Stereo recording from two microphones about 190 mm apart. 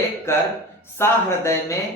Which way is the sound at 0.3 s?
15° left (ahead or behind).